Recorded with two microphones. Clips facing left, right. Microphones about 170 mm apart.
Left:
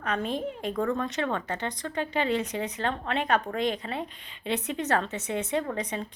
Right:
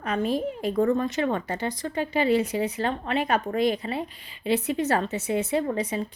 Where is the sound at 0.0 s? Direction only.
5° right (ahead or behind).